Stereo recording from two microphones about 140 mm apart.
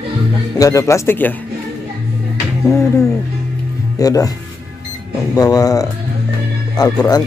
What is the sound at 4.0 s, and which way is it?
Speech, 25° left (ahead or behind).